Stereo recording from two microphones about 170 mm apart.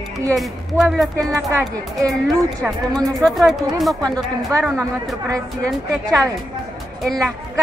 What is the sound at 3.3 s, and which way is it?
A woman's voice, centre (ahead or behind).